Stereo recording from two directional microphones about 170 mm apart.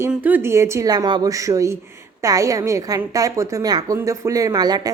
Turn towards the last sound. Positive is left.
turn(degrees=-25)  # may be behind; listen again after turning